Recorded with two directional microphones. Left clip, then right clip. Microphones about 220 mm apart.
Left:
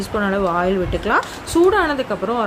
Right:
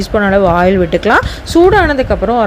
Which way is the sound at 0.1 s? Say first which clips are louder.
Right 9 dB; 30° right (ahead or behind).